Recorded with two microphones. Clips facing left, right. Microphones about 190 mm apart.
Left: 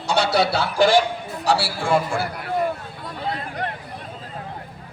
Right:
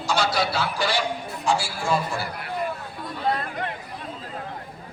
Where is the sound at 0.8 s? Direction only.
50° left (ahead or behind).